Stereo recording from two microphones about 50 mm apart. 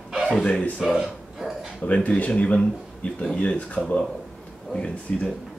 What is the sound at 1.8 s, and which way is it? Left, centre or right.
Speech, left.